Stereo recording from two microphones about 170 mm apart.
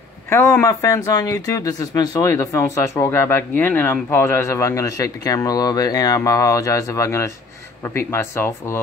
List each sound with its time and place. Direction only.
0.3 s speech: 15° left (ahead or behind)